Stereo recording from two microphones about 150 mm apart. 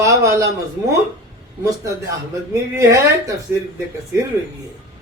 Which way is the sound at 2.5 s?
20° right (ahead or behind).